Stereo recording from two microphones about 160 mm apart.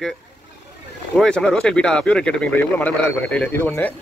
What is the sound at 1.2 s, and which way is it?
Speech, 5° left (ahead or behind).